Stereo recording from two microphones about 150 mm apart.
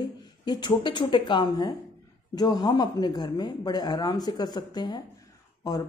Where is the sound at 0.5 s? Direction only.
30° left (ahead or behind).